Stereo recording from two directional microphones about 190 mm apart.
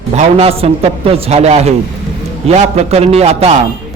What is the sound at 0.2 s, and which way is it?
A man's voice, 30° right (ahead or behind).